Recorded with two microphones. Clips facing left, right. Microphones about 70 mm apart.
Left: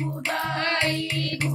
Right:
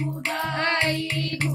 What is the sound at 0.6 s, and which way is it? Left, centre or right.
Music, right.